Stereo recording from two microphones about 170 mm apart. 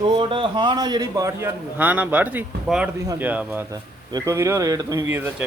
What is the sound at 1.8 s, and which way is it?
A man's voice, 10° right (ahead or behind).